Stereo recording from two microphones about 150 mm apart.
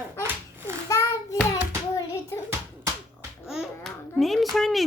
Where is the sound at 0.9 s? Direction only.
25° left (ahead or behind).